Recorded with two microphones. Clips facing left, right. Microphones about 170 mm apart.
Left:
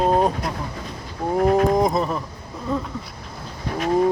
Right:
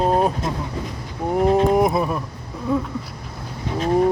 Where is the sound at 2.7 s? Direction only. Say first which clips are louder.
Right 3 dB; 10° right (ahead or behind).